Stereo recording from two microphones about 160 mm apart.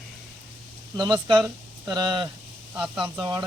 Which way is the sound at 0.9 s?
30° right (ahead or behind).